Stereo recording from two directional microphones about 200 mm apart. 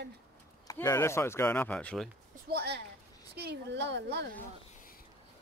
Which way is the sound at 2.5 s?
55° right (ahead or behind).